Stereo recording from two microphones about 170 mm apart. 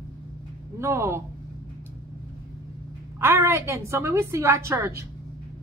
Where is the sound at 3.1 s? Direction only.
15° right (ahead or behind).